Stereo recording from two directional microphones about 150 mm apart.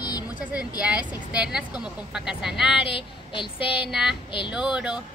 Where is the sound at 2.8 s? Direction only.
35° left (ahead or behind).